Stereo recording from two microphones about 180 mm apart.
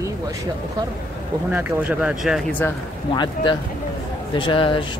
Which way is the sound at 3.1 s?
25° left (ahead or behind).